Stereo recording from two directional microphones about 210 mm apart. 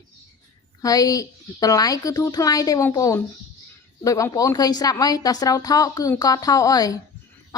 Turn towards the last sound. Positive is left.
turn(degrees=15)  # may be behind; listen again after turning